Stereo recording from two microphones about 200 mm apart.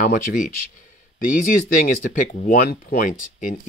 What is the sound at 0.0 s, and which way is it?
Speech, 45° left (ahead or behind).